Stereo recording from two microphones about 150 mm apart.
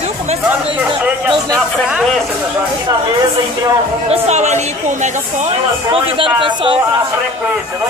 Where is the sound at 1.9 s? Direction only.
Centre (ahead or behind).